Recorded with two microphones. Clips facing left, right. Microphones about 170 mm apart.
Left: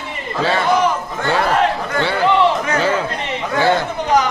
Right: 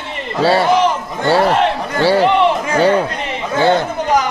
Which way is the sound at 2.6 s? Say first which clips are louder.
Right 5 dB; 30° right (ahead or behind).